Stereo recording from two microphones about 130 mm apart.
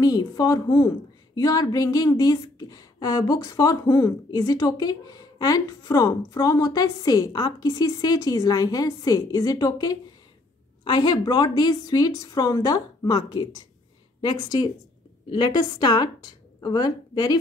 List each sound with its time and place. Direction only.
0.0 s a woman's voice: 30° left (ahead or behind)